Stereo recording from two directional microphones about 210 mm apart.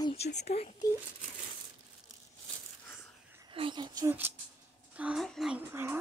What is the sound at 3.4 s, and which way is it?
Speech, 25° right (ahead or behind).